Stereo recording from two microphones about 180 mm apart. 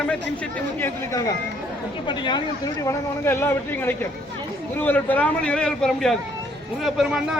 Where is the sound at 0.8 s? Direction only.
15° left (ahead or behind).